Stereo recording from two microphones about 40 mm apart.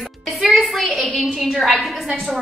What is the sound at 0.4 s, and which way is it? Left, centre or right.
Music, centre.